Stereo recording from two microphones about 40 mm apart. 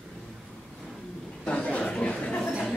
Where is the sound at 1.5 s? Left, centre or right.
Left.